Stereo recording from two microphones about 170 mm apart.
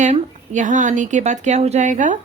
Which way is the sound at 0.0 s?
45° right (ahead or behind).